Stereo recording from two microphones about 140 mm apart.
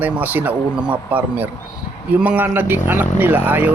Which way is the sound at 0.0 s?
10° right (ahead or behind).